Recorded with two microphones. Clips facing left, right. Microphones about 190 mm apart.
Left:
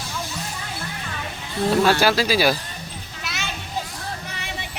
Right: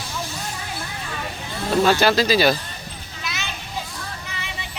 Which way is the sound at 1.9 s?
5° left (ahead or behind).